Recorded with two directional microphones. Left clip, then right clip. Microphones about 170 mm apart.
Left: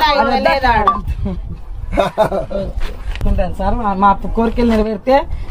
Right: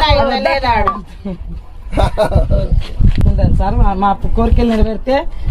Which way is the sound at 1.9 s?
55° right (ahead or behind).